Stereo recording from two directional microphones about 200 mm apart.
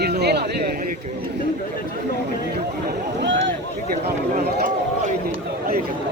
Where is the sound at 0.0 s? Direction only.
55° right (ahead or behind).